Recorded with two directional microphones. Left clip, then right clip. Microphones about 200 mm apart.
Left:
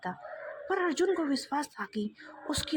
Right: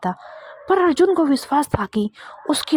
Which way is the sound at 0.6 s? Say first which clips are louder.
Right 13 dB; 40° right (ahead or behind).